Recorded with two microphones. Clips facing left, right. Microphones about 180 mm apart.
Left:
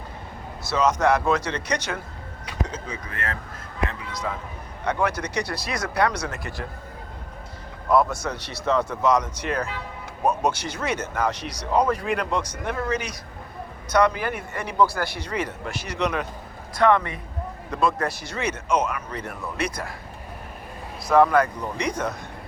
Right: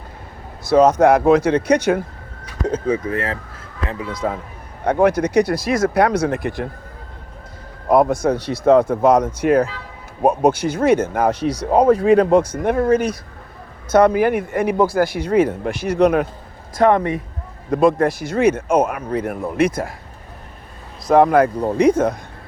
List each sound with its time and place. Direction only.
0.7 s speech: 55° right (ahead or behind)
3.0 s speech: 30° right (ahead or behind)
4.1 s speech: 55° right (ahead or behind)
7.9 s speech: 55° right (ahead or behind)
11.9 s speech: 30° right (ahead or behind)
12.3 s speech: 55° right (ahead or behind)
16.7 s speech: 40° right (ahead or behind)
17.7 s speech: 50° right (ahead or behind)
21.2 s speech: 50° right (ahead or behind)